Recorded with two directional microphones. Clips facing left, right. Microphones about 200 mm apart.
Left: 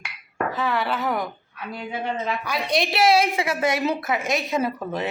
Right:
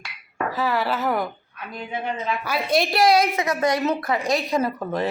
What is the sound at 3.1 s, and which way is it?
Speech, 25° left (ahead or behind).